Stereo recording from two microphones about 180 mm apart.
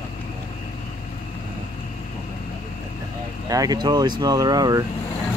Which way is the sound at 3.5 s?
20° right (ahead or behind).